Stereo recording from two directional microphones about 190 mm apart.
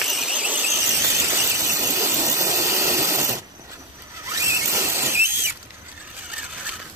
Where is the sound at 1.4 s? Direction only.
15° right (ahead or behind).